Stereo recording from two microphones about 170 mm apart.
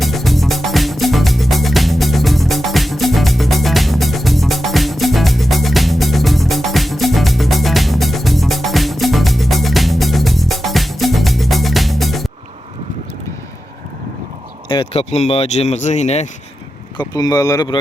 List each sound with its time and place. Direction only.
0.0 s music: centre (ahead or behind)
14.7 s speech: 35° left (ahead or behind)
17.0 s speech: 20° left (ahead or behind)